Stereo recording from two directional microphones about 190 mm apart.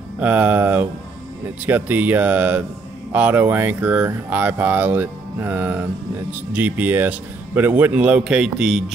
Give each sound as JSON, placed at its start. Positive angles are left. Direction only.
{"t": 0.2, "sound": "speech", "side_deg": -10}